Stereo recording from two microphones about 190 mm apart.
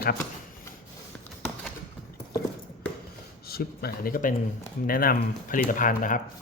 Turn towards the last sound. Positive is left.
turn(degrees=45)  # may be behind; listen again after turning